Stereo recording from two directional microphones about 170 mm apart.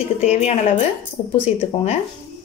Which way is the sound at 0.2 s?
40° left (ahead or behind).